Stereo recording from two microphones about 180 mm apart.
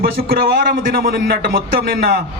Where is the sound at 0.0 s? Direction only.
55° right (ahead or behind).